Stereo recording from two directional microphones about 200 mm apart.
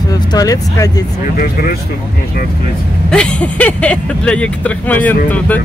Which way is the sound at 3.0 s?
5° left (ahead or behind).